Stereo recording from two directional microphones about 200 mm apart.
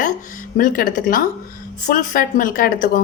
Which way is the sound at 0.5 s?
45° left (ahead or behind).